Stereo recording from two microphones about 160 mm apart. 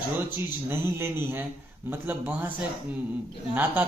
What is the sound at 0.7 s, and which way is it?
Speech, 15° right (ahead or behind).